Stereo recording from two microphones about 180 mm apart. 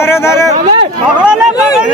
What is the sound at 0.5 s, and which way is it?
Speech, 40° right (ahead or behind).